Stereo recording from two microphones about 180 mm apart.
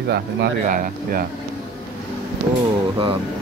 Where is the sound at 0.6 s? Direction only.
50° right (ahead or behind).